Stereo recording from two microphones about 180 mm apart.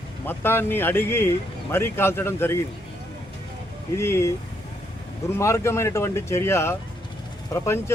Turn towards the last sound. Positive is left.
turn(degrees=15)  # may be behind; listen again after turning